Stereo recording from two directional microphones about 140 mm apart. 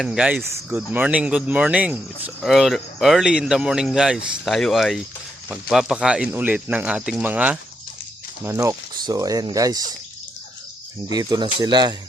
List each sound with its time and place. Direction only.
0.0 s speech: 5° right (ahead or behind)
0.4 s speech: 20° right (ahead or behind)
0.8 s speech: 10° right (ahead or behind); by 9.8 s 25° right (ahead or behind)
11.1 s speech: 30° right (ahead or behind)